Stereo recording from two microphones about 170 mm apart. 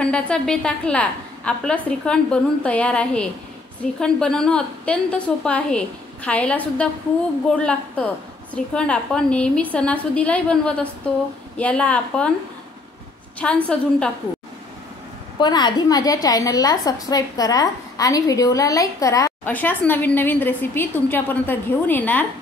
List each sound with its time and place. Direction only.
0.0 s a woman's voice: 5° left (ahead or behind)
13.7 s a woman's voice: 5° left (ahead or behind)
15.3 s a woman's voice: 25° left (ahead or behind); by 22.2 s 10° left (ahead or behind)